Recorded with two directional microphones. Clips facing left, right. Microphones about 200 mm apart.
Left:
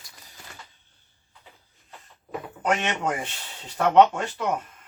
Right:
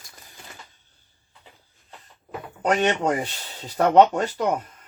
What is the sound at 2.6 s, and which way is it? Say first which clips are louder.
Speech: right 5 dB; 35° right (ahead or behind).